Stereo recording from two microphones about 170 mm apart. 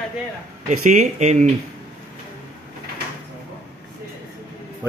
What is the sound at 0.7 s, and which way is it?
Speech, 45° right (ahead or behind).